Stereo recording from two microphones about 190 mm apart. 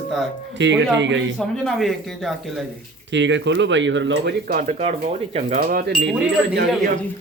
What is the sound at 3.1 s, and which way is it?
Speech, 70° right (ahead or behind).